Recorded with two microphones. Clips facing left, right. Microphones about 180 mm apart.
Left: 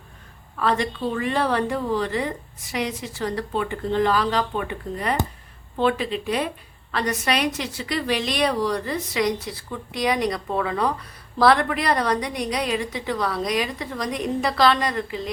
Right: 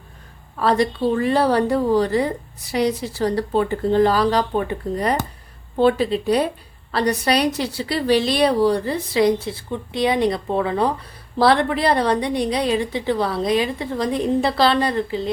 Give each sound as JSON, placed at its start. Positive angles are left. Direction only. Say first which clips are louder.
{"t": 0.5, "sound": "a woman's voice", "louder": "right 5 dB", "side_deg": -35}